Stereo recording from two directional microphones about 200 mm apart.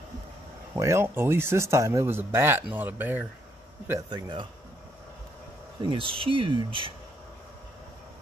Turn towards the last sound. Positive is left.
turn(degrees=-25)  # may be behind; listen again after turning